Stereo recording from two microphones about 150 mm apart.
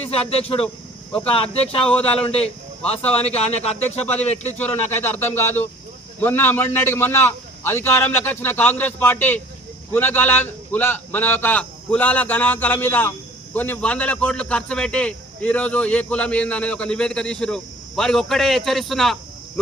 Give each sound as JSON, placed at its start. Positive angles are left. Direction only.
{"t": 0.0, "sound": "a man's voice", "side_deg": 40}
{"t": 4.7, "sound": "a man's voice", "side_deg": 15}